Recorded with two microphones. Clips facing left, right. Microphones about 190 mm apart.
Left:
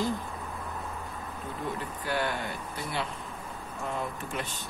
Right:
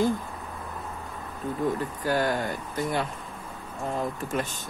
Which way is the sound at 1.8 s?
40° right (ahead or behind).